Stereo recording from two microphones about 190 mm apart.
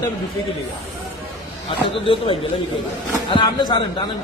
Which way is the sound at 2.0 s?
30° left (ahead or behind).